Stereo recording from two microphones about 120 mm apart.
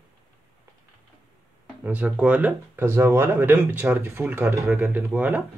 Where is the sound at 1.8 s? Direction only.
10° right (ahead or behind).